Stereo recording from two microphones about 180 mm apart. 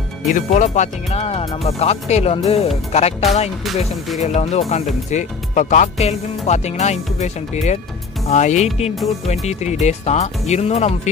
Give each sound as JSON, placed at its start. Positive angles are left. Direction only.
{"t": 0.3, "sound": "speech", "side_deg": 45}
{"t": 3.6, "sound": "speech", "side_deg": 0}
{"t": 4.2, "sound": "speech", "side_deg": 40}